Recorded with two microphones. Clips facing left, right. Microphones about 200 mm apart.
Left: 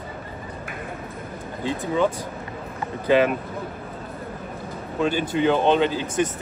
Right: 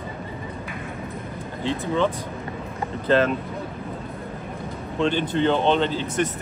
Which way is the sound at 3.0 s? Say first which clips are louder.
Left 1 dB; 15° left (ahead or behind).